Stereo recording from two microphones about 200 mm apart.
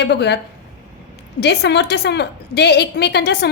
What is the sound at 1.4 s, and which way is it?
A woman's voice, 60° left (ahead or behind).